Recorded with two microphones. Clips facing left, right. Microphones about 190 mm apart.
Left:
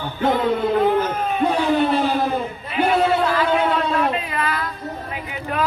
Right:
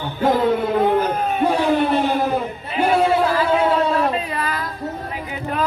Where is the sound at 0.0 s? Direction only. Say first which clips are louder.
Right 2 dB; 10° right (ahead or behind).